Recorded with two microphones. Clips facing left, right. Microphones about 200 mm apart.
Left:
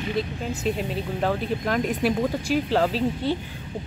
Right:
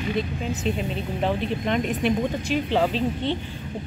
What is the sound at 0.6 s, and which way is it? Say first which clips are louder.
A woman's voice: left 2 dB; 5° left (ahead or behind).